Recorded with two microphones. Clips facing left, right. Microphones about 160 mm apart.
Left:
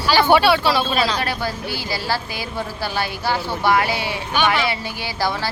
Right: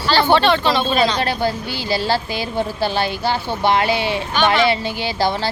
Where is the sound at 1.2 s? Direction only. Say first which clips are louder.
Right 4 dB; 25° right (ahead or behind).